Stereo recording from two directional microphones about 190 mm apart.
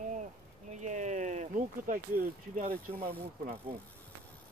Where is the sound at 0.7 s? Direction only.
40° right (ahead or behind).